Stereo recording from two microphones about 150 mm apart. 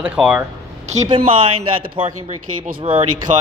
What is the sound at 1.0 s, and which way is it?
Speech, 35° right (ahead or behind).